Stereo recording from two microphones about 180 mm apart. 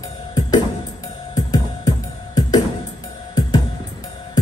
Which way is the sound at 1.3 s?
20° left (ahead or behind).